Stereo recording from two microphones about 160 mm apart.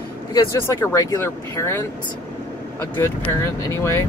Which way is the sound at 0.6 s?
20° left (ahead or behind).